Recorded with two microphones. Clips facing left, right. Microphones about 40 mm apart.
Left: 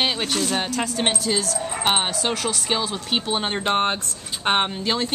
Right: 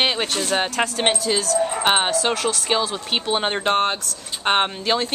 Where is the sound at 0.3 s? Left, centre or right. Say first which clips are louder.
Right 1 dB; centre.